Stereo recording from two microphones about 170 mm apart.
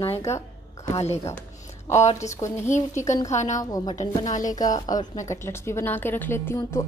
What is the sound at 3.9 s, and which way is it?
Speech, 45° left (ahead or behind).